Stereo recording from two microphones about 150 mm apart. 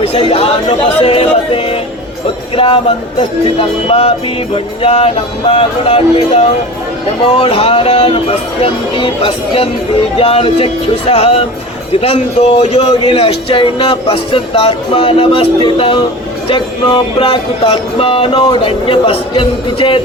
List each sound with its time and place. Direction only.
0.0 s speech: 40° left (ahead or behind)
1.0 s music: 40° left (ahead or behind)
2.6 s speech: 35° left (ahead or behind)